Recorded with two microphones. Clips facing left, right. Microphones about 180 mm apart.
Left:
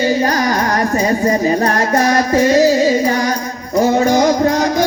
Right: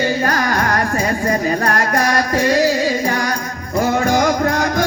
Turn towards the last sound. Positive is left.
turn(degrees=20)  # may be behind; listen again after turning